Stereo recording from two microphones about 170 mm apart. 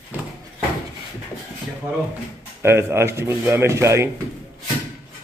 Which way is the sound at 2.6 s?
15° right (ahead or behind).